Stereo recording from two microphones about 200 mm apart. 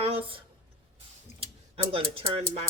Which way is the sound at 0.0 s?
30° right (ahead or behind).